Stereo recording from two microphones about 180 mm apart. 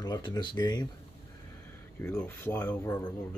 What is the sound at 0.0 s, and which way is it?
Speech, 25° left (ahead or behind).